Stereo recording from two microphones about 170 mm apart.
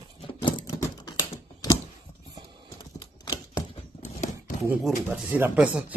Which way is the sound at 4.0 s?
45° left (ahead or behind).